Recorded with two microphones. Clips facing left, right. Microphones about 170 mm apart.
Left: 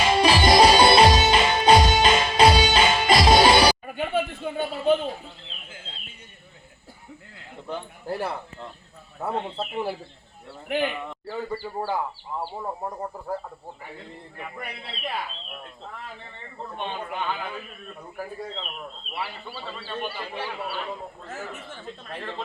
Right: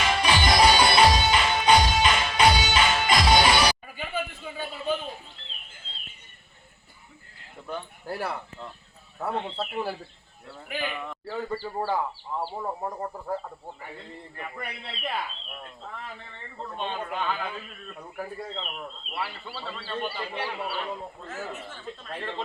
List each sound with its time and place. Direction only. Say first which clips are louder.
0.2 s music: left 5 dB; 30° left (ahead or behind)
3.8 s a sound: left 7 dB; 65° left (ahead or behind)
7.7 s a sound: left 3 dB; 20° left (ahead or behind)
9.2 s speech: left 1 dB; 15° left (ahead or behind)
11.3 s speech: even; centre (ahead or behind)
16.7 s speech: even; 15° left (ahead or behind)
19.7 s speech: even; 15° left (ahead or behind)
20.4 s speech: even; 5° right (ahead or behind)